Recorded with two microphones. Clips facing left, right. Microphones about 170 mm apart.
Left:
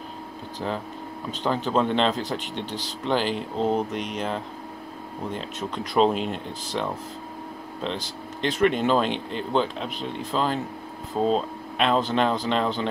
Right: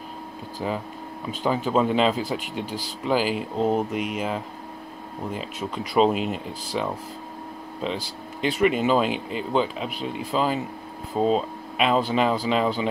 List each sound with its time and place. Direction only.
0.6 s speech: 10° right (ahead or behind)